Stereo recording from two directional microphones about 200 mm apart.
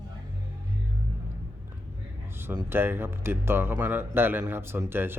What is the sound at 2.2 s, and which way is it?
Speech, 10° right (ahead or behind).